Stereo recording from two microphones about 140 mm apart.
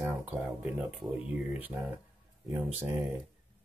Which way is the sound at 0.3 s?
10° right (ahead or behind).